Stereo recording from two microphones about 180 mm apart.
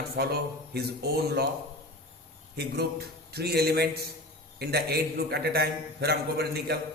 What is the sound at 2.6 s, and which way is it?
A man's voice, 65° right (ahead or behind).